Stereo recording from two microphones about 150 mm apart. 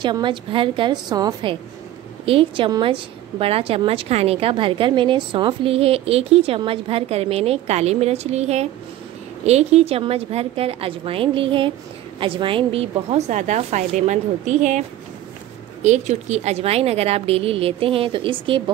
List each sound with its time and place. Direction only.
0.0 s a woman's voice: 30° right (ahead or behind)